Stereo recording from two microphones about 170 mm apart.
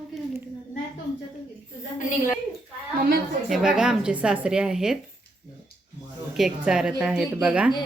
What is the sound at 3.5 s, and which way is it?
A woman's voice, 5° right (ahead or behind).